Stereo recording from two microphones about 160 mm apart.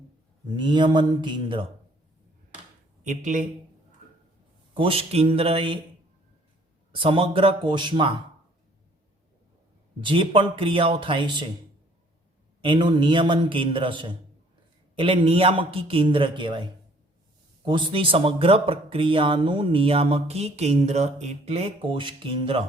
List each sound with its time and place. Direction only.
0.5 s speech: 30° right (ahead or behind)
3.0 s speech: 50° right (ahead or behind)
4.7 s speech: 35° right (ahead or behind)
6.9 s speech: 35° right (ahead or behind)
10.0 s speech: 30° right (ahead or behind)
12.6 s speech: 30° right (ahead or behind)